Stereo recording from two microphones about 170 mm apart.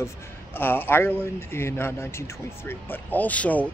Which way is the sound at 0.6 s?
10° left (ahead or behind).